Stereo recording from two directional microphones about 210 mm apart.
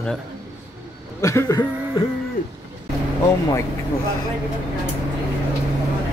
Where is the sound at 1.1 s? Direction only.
15° left (ahead or behind).